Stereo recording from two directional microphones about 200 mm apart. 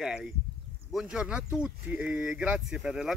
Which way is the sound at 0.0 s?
Centre (ahead or behind).